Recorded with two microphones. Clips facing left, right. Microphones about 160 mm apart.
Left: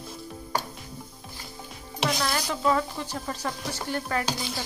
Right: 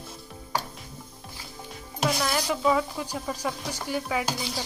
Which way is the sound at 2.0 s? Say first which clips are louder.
Right 1 dB; 5° right (ahead or behind).